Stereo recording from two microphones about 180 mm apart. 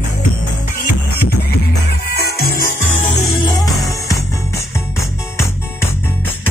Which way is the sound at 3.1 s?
25° left (ahead or behind).